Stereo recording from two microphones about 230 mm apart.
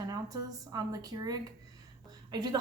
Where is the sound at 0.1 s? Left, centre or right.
Centre.